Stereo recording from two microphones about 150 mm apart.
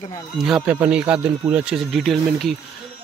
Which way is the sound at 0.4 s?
5° right (ahead or behind).